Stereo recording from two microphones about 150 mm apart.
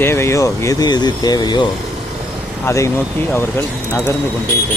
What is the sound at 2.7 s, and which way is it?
Speech, 20° left (ahead or behind).